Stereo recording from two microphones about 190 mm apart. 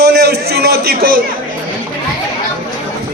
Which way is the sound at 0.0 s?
55° right (ahead or behind).